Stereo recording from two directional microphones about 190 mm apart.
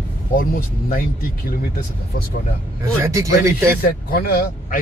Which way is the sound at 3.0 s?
15° right (ahead or behind).